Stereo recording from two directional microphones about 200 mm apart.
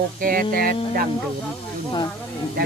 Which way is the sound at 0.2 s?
45° right (ahead or behind).